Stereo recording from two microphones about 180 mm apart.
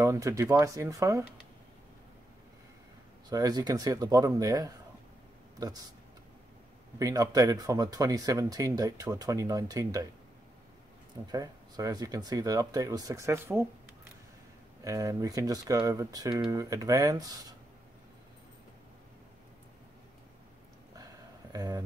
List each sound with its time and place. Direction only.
0.0 s speech: 15° right (ahead or behind)
3.3 s speech: 20° right (ahead or behind)
7.0 s speech: 20° right (ahead or behind)
11.3 s speech: 20° right (ahead or behind)
14.8 s speech: 15° right (ahead or behind)
20.9 s a sound: 20° right (ahead or behind)